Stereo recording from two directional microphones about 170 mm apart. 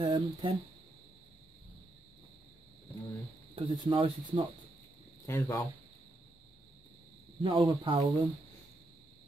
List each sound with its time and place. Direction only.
0.0 s speech: 25° right (ahead or behind)
3.5 s speech: 30° right (ahead or behind)
5.2 s speech: 20° left (ahead or behind)
7.4 s speech: 25° right (ahead or behind)